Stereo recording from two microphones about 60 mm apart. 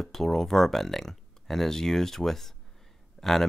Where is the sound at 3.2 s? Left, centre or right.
Centre.